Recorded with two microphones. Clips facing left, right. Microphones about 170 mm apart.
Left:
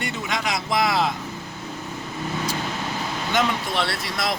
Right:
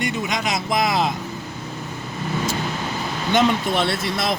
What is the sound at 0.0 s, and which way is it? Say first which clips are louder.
Speech: right 3 dB; 15° right (ahead or behind).